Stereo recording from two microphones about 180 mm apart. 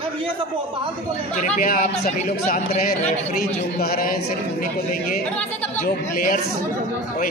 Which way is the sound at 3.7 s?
55° left (ahead or behind).